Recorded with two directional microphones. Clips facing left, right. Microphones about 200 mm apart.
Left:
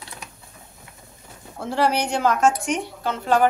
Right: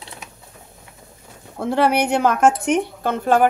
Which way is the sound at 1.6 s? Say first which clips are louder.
Right 4 dB; 60° right (ahead or behind).